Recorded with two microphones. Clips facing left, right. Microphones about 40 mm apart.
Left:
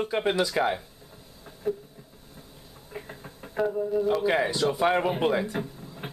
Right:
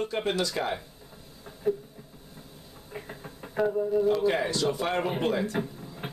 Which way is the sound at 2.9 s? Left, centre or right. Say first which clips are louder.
Even; centre.